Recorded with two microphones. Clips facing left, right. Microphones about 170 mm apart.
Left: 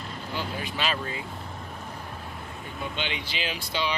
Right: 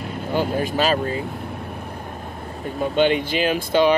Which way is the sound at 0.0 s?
55° right (ahead or behind).